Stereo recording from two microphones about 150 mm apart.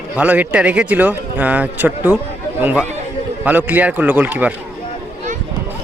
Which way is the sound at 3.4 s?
10° right (ahead or behind).